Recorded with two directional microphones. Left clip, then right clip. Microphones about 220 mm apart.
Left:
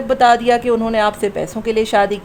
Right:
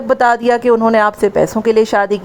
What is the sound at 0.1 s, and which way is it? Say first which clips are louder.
A woman's voice: right 1 dB; 20° right (ahead or behind).